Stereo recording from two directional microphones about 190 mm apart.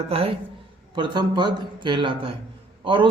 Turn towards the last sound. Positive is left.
turn(degrees=-25)  # may be behind; listen again after turning